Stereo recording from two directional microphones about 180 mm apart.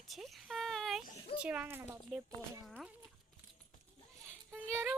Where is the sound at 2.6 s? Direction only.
Centre (ahead or behind).